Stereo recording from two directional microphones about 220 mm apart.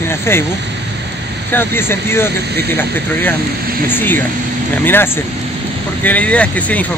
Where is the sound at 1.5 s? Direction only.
10° left (ahead or behind).